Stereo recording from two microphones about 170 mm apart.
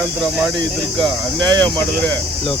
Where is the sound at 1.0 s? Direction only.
25° right (ahead or behind).